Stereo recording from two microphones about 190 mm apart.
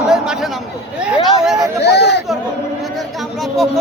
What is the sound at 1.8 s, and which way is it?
Speech, 60° left (ahead or behind).